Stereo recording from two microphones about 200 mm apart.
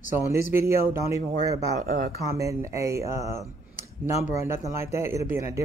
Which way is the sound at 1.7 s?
45° right (ahead or behind).